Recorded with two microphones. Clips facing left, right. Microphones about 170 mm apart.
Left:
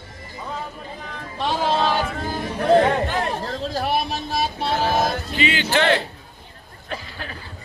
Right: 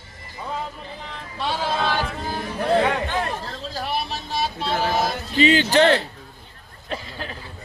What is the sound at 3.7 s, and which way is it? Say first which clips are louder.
Vehicle: left 3 dB; 45° left (ahead or behind).